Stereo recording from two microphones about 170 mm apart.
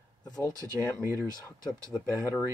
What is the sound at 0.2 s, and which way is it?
Speech, 25° left (ahead or behind).